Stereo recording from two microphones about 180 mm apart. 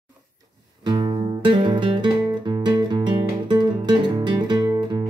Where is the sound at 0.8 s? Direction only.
25° right (ahead or behind).